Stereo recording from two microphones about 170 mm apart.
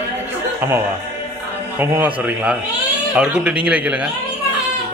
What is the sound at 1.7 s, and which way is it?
Speech, 10° right (ahead or behind).